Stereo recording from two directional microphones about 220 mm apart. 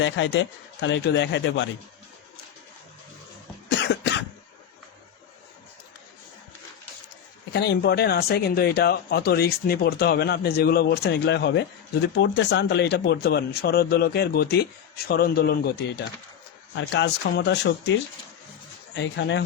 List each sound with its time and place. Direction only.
0.0 s speech: 60° left (ahead or behind)
3.7 s cough: 50° left (ahead or behind)
7.5 s speech: 50° left (ahead or behind)
18.9 s speech: 55° left (ahead or behind)